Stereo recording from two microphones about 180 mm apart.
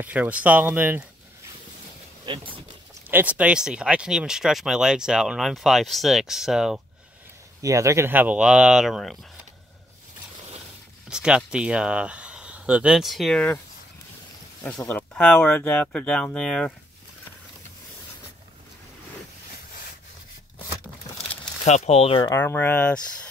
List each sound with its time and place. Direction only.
0.0 s speech: 10° right (ahead or behind)
2.2 s a sound: 30° right (ahead or behind)
3.1 s speech: 10° right (ahead or behind)
7.6 s speech: 15° right (ahead or behind); by 9.2 s centre (ahead or behind)
11.1 s speech: 5° right (ahead or behind)
14.9 s speech: 10° left (ahead or behind)
21.6 s speech: 40° left (ahead or behind)
22.3 s speech: 10° left (ahead or behind)